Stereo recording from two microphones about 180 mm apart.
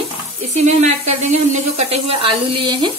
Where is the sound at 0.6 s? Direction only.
40° right (ahead or behind).